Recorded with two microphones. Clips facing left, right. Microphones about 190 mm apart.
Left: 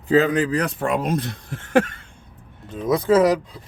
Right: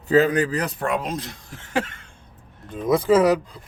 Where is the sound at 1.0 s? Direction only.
55° left (ahead or behind).